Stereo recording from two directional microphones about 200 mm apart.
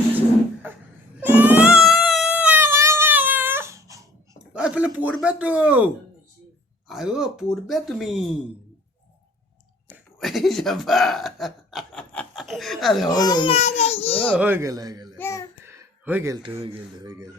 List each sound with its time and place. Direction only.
1.2 s baby cry: 10° right (ahead or behind)
4.5 s a sound: 5° right (ahead or behind)
5.2 s a man's voice: 5° right (ahead or behind)
9.9 s a sound: centre (ahead or behind)
13.1 s a child's voice: 20° left (ahead or behind)
14.3 s a man's voice: 10° right (ahead or behind)
15.2 s babbling: 15° left (ahead or behind)
15.6 s a sound: 10° right (ahead or behind)
16.6 s speech: 20° right (ahead or behind)